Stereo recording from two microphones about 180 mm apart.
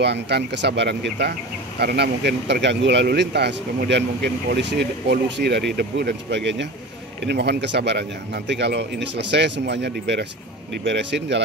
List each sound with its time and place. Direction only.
0.0 s speech: 70° right (ahead or behind)